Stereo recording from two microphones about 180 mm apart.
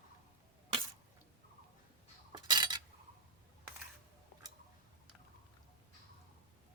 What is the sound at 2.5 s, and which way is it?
Cutlery, 25° right (ahead or behind).